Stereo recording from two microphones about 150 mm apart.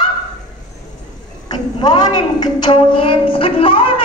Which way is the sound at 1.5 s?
30° left (ahead or behind).